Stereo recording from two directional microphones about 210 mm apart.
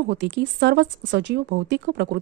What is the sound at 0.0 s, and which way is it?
Speech, 55° right (ahead or behind).